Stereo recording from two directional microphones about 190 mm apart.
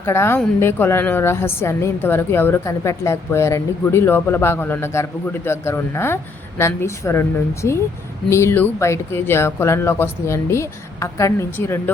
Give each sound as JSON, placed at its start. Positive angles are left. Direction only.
{"t": 0.0, "sound": "a woman's voice", "side_deg": 15}